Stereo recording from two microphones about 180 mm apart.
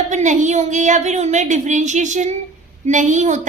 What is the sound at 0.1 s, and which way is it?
A woman's voice, 40° right (ahead or behind).